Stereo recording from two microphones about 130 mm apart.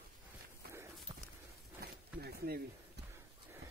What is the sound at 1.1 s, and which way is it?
Horse, 30° right (ahead or behind).